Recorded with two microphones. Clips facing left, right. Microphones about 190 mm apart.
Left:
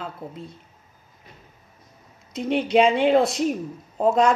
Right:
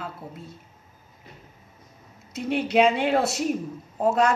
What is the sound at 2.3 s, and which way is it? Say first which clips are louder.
Speech: left 2 dB; 5° right (ahead or behind).